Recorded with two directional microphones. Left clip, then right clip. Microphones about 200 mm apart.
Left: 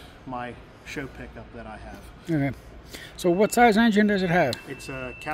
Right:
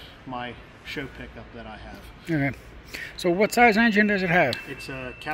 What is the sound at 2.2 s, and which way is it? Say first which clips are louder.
Speech: right 1 dB; 10° left (ahead or behind).